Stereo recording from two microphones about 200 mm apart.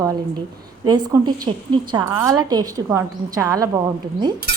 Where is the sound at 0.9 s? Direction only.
20° right (ahead or behind).